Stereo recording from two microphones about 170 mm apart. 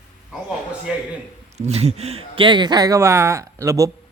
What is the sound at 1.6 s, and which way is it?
Speech, 40° right (ahead or behind).